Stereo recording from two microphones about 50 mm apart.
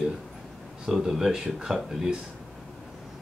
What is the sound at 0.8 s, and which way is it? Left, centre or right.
Speech, centre.